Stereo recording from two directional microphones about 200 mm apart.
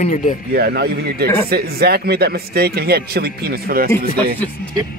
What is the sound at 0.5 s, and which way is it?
A man's voice, 50° right (ahead or behind).